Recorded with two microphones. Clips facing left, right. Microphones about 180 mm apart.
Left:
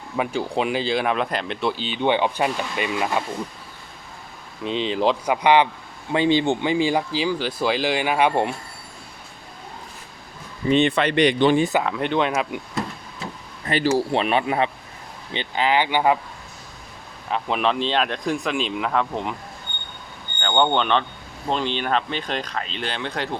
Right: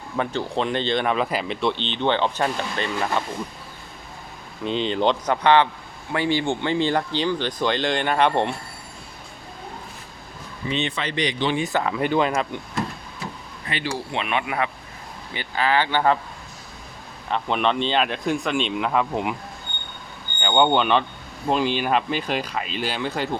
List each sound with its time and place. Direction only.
0.2 s speech: 10° left (ahead or behind)
4.6 s speech: centre (ahead or behind)
10.7 s speech: 55° left (ahead or behind)
11.7 s speech: centre (ahead or behind)
13.7 s speech: 45° left (ahead or behind); by 16.1 s 15° left (ahead or behind)
17.2 s speech: centre (ahead or behind)
20.4 s speech: 5° right (ahead or behind)